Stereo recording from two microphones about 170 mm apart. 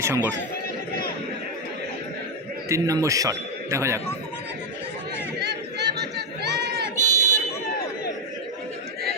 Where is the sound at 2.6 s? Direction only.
20° right (ahead or behind).